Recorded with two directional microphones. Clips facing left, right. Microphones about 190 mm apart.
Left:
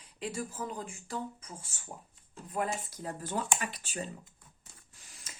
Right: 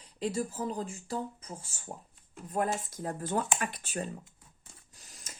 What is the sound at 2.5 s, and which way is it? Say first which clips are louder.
Speech: right 3 dB; 50° right (ahead or behind).